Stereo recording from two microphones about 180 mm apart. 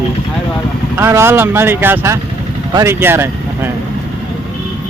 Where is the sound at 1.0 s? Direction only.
15° right (ahead or behind).